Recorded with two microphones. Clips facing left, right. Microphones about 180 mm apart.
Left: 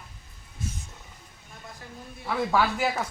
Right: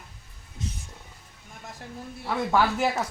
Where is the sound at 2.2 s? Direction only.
Centre (ahead or behind).